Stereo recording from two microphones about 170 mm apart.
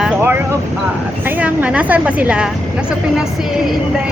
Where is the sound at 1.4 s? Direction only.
10° right (ahead or behind).